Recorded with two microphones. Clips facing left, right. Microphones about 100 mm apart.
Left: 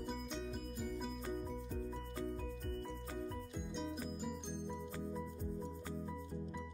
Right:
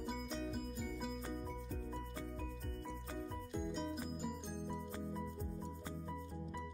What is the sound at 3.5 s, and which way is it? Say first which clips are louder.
Music: right 5 dB; centre (ahead or behind).